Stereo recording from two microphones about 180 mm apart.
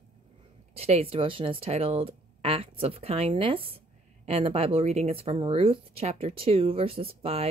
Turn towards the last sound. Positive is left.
turn(degrees=-35)  # may be behind; listen again after turning